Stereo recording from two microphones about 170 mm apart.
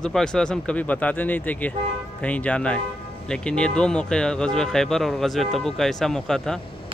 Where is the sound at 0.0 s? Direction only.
5° left (ahead or behind).